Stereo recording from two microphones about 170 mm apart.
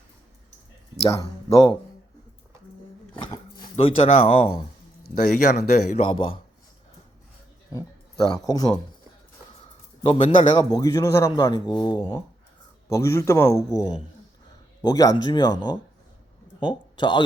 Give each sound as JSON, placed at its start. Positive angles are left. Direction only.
{"t": 1.1, "sound": "speech", "side_deg": 20}
{"t": 3.8, "sound": "speech", "side_deg": 35}
{"t": 5.2, "sound": "speech", "side_deg": 45}
{"t": 6.1, "sound": "a man's voice", "side_deg": 30}
{"t": 7.7, "sound": "a man's voice", "side_deg": 20}
{"t": 10.1, "sound": "a man's voice", "side_deg": 30}